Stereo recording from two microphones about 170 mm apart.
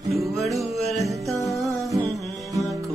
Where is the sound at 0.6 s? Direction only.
Centre (ahead or behind).